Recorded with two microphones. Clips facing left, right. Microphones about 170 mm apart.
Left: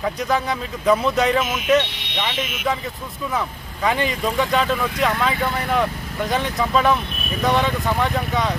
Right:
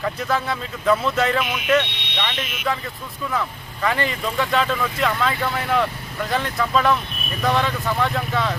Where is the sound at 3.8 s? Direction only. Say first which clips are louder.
Left 2 dB; 15° left (ahead or behind).